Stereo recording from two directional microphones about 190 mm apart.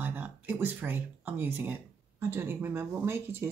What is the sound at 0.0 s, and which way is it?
Speech, 10° right (ahead or behind).